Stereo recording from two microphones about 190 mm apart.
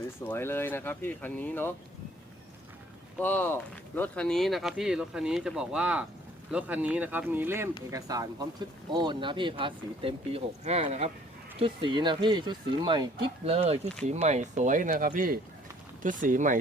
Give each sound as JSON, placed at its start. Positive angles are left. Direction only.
{"t": 0.3, "sound": "speech", "side_deg": 10}
{"t": 3.2, "sound": "speech", "side_deg": 10}